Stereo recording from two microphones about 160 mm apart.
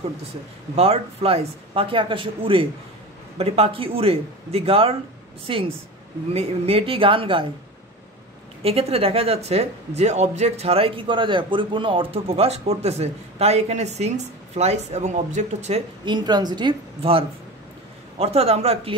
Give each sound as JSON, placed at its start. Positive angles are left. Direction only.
{"t": 0.7, "sound": "speech", "side_deg": -40}
{"t": 8.6, "sound": "speech", "side_deg": -40}
{"t": 16.1, "sound": "speech", "side_deg": -25}
{"t": 18.2, "sound": "speech", "side_deg": -40}